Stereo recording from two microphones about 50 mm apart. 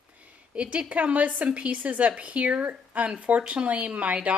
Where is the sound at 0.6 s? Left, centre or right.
Right.